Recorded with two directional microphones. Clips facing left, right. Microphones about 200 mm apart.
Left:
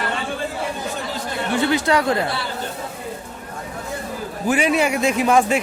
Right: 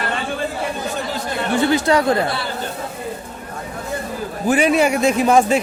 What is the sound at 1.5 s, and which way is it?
Speech, 40° right (ahead or behind).